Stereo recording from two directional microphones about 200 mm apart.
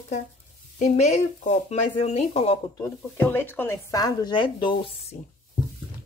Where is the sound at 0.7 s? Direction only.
35° left (ahead or behind).